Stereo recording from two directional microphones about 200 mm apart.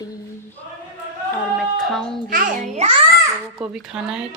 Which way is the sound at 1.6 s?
Centre (ahead or behind).